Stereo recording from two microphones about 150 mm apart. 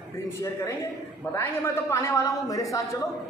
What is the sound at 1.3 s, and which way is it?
A woman's voice, 15° left (ahead or behind).